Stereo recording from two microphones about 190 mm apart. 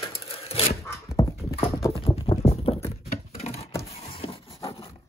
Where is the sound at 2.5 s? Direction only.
30° left (ahead or behind).